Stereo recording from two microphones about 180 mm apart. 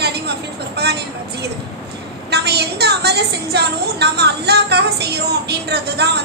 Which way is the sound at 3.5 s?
65° right (ahead or behind).